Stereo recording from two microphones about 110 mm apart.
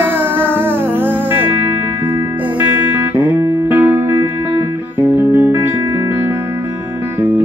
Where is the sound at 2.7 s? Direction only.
15° right (ahead or behind).